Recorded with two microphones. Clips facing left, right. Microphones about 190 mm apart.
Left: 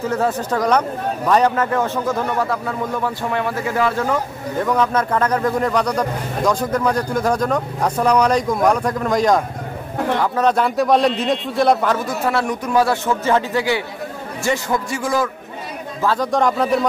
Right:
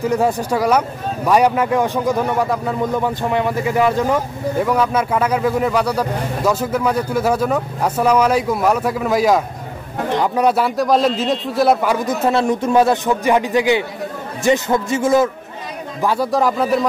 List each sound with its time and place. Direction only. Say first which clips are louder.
0.1 s a man's voice: right 2 dB; 10° right (ahead or behind)
12.1 s a man's voice: right 4 dB; 25° right (ahead or behind)
16.3 s a man's voice: even; 5° right (ahead or behind)